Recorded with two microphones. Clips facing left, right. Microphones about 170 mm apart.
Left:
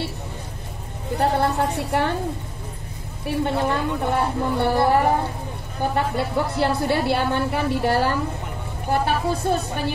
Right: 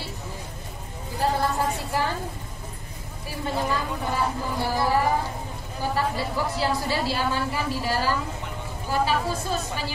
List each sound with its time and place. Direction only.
1.1 s a woman's voice: 65° left (ahead or behind)
3.3 s a woman's voice: 65° left (ahead or behind)